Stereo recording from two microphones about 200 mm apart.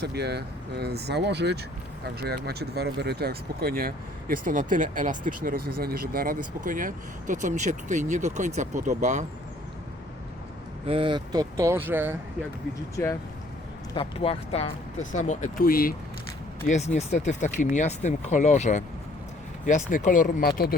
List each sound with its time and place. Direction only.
0.0 s speech: 55° right (ahead or behind); by 9.2 s 35° right (ahead or behind)
10.8 s speech: 25° right (ahead or behind); by 12.1 s 10° right (ahead or behind)
13.0 s speech: 10° left (ahead or behind)
13.9 s speech: 25° left (ahead or behind); by 16.0 s 45° left (ahead or behind)
16.6 s speech: 35° left (ahead or behind)